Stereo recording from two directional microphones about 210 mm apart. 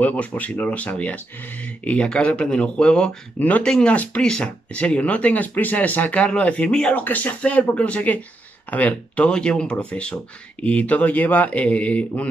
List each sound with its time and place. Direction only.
0.0 s speech: 5° left (ahead or behind)